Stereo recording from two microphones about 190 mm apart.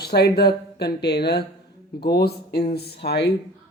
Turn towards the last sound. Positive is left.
turn(degrees=65)  # may be behind; listen again after turning